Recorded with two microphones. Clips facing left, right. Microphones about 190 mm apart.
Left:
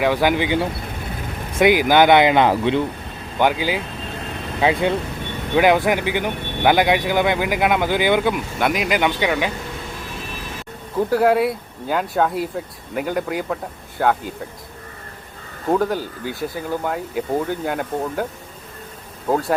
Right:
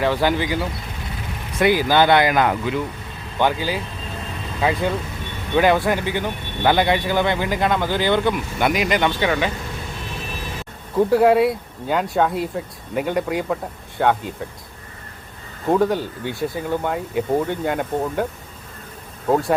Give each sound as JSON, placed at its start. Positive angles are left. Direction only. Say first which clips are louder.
{"t": 0.0, "sound": "speech", "louder": "left 2 dB", "side_deg": 15}
{"t": 3.3, "sound": "speech", "louder": "left 2 dB", "side_deg": 10}
{"t": 8.5, "sound": "speech", "louder": "even", "side_deg": 0}
{"t": 11.1, "sound": "speech", "louder": "right 1 dB", "side_deg": 0}
{"t": 15.7, "sound": "speech", "louder": "right 1 dB", "side_deg": 0}